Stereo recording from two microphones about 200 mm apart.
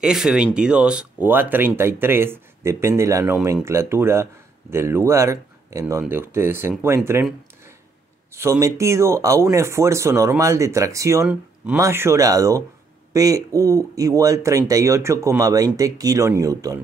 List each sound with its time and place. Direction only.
0.0 s speech: centre (ahead or behind)
8.3 s speech: 15° right (ahead or behind)